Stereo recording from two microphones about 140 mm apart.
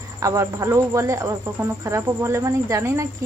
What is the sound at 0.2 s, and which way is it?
Speech, 20° right (ahead or behind).